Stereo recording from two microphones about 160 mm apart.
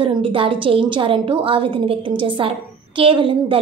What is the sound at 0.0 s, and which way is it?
A woman's voice, 35° right (ahead or behind).